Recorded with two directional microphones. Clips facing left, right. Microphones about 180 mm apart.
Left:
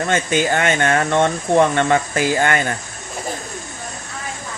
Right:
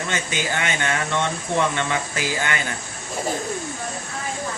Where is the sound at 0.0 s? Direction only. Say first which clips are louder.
Left 8 dB; 50° left (ahead or behind).